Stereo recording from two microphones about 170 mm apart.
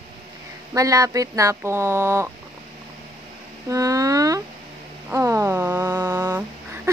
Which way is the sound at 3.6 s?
20° right (ahead or behind).